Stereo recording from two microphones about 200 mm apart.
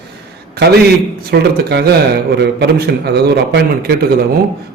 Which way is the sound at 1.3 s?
55° right (ahead or behind).